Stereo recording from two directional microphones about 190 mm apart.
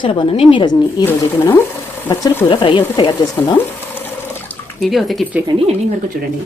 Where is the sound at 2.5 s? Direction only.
25° left (ahead or behind).